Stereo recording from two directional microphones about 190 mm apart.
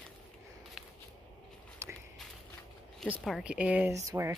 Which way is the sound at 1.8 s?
15° right (ahead or behind).